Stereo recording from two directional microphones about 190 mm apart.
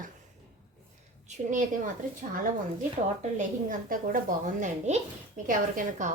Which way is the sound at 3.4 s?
45° right (ahead or behind).